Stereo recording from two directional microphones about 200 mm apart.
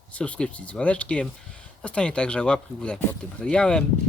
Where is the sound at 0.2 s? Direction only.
5° left (ahead or behind).